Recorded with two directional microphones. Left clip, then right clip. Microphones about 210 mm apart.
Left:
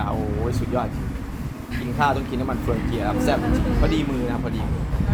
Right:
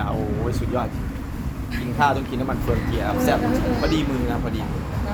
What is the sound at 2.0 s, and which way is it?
Speech, 5° left (ahead or behind).